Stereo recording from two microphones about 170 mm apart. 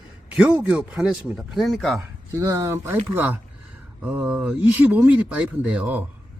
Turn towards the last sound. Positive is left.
turn(degrees=-10)  # may be behind; listen again after turning